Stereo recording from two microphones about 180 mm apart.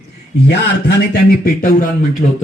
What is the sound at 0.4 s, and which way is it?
Speech, 70° left (ahead or behind).